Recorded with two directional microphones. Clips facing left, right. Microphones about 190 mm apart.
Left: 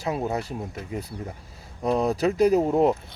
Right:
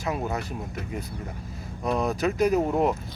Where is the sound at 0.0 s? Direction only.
30° left (ahead or behind).